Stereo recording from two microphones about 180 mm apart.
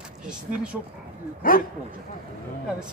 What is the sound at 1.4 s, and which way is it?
Speech, 50° left (ahead or behind).